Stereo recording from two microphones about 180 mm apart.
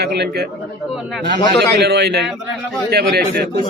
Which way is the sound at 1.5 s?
65° right (ahead or behind).